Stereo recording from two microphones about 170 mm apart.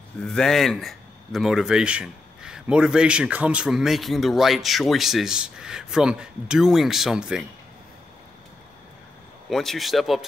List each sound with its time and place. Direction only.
0.2 s a man's voice: 5° left (ahead or behind)
9.5 s a man's voice: centre (ahead or behind)